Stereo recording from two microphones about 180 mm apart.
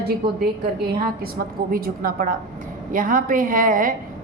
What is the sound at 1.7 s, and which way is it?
A woman's voice, 55° right (ahead or behind).